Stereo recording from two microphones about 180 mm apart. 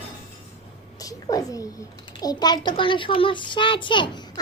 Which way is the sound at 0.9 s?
20° left (ahead or behind).